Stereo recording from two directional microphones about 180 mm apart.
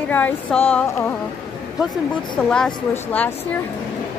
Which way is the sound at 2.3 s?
5° left (ahead or behind).